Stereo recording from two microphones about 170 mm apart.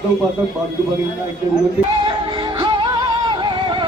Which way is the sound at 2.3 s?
25° right (ahead or behind).